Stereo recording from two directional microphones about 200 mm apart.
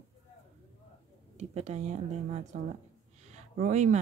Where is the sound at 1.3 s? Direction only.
35° right (ahead or behind).